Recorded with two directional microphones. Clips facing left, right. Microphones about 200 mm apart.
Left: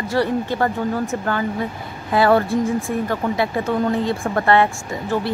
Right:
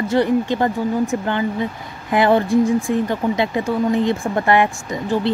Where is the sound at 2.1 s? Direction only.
20° right (ahead or behind).